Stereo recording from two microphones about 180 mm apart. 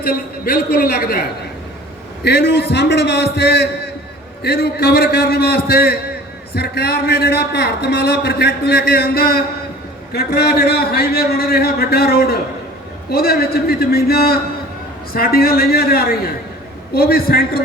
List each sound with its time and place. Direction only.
0.0 s a man's voice: 55° left (ahead or behind)
2.2 s a man's voice: 60° left (ahead or behind)